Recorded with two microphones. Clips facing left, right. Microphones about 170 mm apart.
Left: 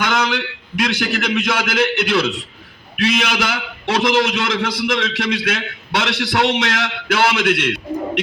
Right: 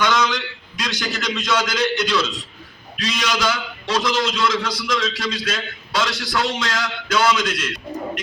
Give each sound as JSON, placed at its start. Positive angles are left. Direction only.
{"t": 0.0, "sound": "a man's voice", "side_deg": 60}